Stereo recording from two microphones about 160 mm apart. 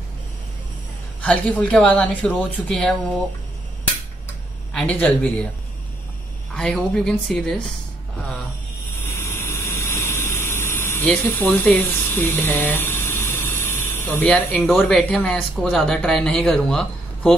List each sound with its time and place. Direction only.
1.2 s speech: 5° left (ahead or behind)
4.7 s speech: 10° left (ahead or behind)
6.5 s speech: 5° left (ahead or behind)
8.9 s vehicle: 15° left (ahead or behind)
11.5 s speech: 15° left (ahead or behind)